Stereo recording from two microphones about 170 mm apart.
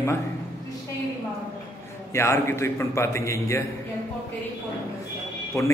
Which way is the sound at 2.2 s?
15° left (ahead or behind).